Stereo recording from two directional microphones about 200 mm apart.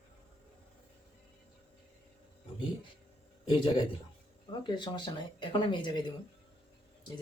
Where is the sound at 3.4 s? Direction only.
20° left (ahead or behind).